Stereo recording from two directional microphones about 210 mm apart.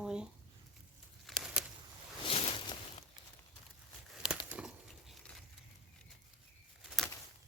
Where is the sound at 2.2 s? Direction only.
25° left (ahead or behind).